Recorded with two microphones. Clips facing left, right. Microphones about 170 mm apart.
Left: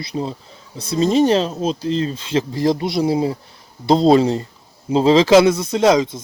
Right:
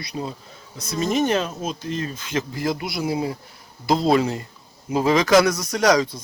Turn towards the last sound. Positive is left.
turn(degrees=25)  # may be behind; listen again after turning